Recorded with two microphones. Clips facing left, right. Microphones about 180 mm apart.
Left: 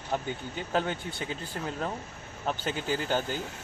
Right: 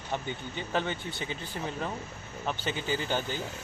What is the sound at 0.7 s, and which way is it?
Speech, 5° left (ahead or behind).